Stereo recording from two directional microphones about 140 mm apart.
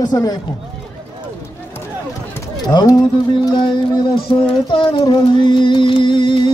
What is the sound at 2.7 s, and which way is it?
Music, 30° left (ahead or behind).